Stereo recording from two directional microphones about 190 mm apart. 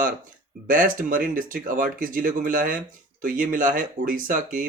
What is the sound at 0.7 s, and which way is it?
Speech, 45° right (ahead or behind).